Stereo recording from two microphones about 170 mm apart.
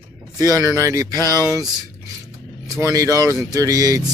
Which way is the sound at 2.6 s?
20° right (ahead or behind).